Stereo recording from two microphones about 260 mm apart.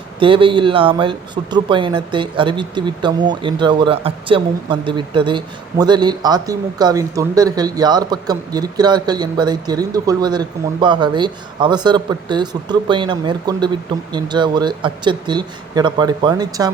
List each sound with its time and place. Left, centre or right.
0.2 s speech: centre